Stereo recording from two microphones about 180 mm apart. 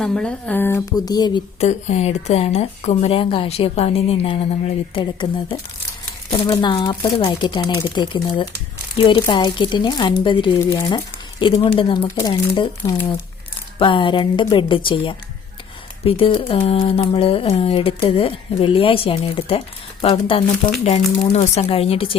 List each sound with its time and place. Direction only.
0.0 s speech: 5° left (ahead or behind); by 1.4 s 20° left (ahead or behind)
1.6 s speech: 35° left (ahead or behind)